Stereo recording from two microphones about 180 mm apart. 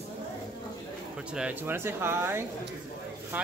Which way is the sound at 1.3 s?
5° right (ahead or behind).